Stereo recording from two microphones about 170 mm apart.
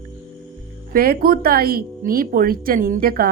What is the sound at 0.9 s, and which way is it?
Speech, 60° right (ahead or behind).